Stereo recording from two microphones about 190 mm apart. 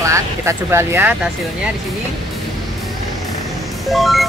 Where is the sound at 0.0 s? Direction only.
15° right (ahead or behind).